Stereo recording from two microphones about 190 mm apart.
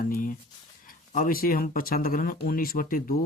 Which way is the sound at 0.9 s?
45° left (ahead or behind).